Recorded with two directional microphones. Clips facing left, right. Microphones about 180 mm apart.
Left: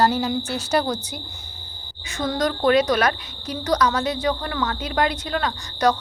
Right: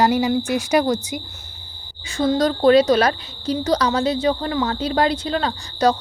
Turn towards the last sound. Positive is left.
turn(degrees=-25)  # may be behind; listen again after turning